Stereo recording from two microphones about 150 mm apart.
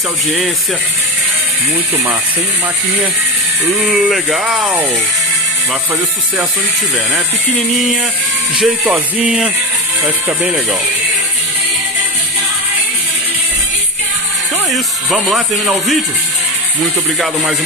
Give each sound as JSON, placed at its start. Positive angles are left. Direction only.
{"t": 3.6, "sound": "speech", "side_deg": -5}
{"t": 8.5, "sound": "speech", "side_deg": -5}
{"t": 14.7, "sound": "speech", "side_deg": 0}